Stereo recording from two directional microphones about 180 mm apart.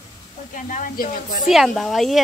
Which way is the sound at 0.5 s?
50° left (ahead or behind).